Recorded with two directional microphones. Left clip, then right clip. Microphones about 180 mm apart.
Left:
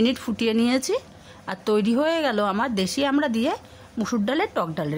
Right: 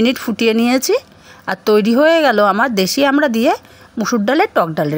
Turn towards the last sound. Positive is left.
turn(degrees=-30)  # may be behind; listen again after turning